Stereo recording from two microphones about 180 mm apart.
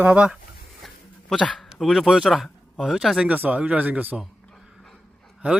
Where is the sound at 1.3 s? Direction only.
5° left (ahead or behind).